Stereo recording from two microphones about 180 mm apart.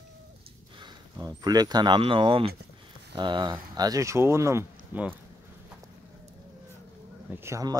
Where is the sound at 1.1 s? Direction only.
20° right (ahead or behind).